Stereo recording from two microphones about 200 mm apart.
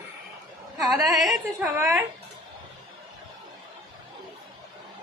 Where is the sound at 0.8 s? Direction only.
Centre (ahead or behind).